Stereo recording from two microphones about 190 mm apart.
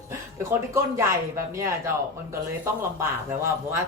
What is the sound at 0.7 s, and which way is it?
Speech, 15° right (ahead or behind).